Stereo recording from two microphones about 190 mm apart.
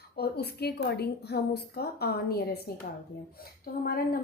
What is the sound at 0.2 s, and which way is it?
A woman's voice, 60° left (ahead or behind).